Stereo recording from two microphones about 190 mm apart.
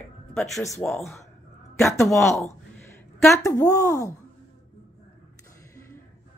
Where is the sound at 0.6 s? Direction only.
15° left (ahead or behind).